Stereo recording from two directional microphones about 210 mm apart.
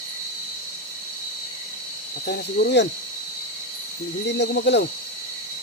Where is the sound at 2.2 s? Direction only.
50° left (ahead or behind).